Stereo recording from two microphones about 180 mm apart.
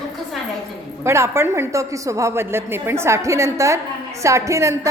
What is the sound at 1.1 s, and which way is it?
A woman's voice, 15° right (ahead or behind).